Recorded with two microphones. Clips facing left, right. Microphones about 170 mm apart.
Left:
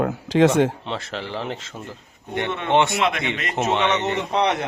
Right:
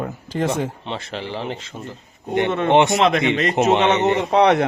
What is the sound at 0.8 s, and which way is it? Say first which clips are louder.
A man's voice: right 1 dB; centre (ahead or behind).